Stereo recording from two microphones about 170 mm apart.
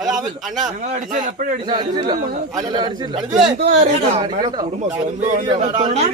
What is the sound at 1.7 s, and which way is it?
A man's voice, 25° right (ahead or behind).